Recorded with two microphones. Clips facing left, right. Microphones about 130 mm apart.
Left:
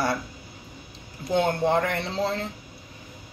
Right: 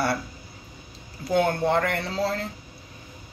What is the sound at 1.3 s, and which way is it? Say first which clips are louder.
Speech: even; 20° left (ahead or behind).